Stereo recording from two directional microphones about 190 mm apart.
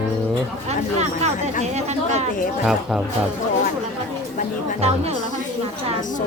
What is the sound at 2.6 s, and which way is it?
Speech, 5° right (ahead or behind).